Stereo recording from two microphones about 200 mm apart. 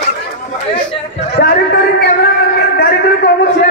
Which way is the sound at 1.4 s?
55° left (ahead or behind).